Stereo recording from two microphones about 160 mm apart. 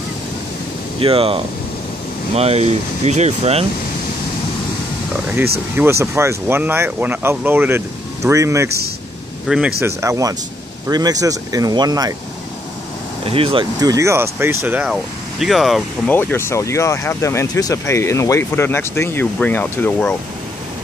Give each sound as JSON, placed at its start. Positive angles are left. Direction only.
{"t": 0.9, "sound": "speech", "side_deg": -35}
{"t": 5.1, "sound": "speech", "side_deg": -10}
{"t": 9.8, "sound": "speech", "side_deg": -15}
{"t": 13.2, "sound": "speech", "side_deg": -35}
{"t": 13.7, "sound": "speech", "side_deg": -20}
{"t": 14.8, "sound": "speech", "side_deg": 0}
{"t": 16.1, "sound": "speech", "side_deg": 10}